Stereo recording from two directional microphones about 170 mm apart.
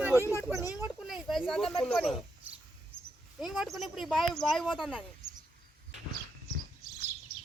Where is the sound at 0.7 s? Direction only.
5° right (ahead or behind).